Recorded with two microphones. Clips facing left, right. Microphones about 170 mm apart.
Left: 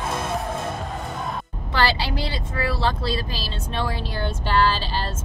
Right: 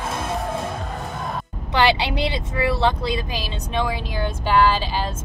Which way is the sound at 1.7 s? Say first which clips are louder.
Right 4 dB; 20° right (ahead or behind).